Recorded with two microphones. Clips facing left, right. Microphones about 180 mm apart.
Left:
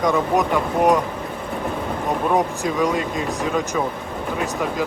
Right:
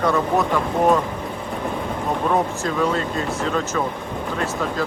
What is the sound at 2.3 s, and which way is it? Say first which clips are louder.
Speech: left 1 dB; 15° left (ahead or behind).